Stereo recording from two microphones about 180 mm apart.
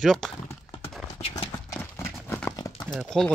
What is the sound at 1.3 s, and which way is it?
Clip-clop, 20° left (ahead or behind).